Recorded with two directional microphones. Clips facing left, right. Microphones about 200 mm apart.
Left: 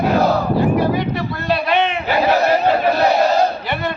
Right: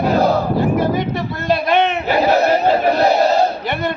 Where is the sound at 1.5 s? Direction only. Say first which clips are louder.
Right 2 dB; 45° right (ahead or behind).